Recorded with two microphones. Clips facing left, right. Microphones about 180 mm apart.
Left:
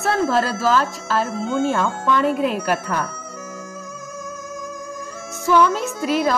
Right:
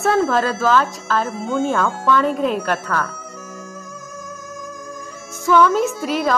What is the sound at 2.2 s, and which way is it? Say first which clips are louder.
Speech: even; 5° left (ahead or behind).